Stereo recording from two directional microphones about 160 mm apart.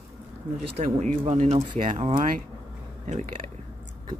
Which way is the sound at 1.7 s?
30° right (ahead or behind).